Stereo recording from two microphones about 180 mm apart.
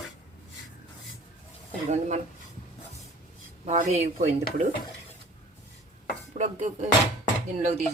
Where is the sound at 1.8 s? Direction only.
40° right (ahead or behind).